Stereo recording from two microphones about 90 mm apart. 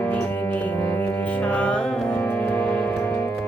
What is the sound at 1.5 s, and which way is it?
Music, 10° left (ahead or behind).